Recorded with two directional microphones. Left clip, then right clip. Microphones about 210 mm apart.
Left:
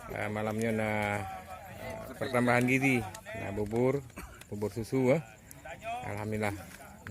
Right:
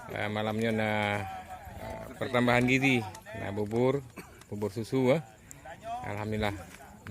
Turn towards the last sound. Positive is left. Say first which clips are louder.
# right 2 dB
turn(degrees=-10)  # may be behind; listen again after turning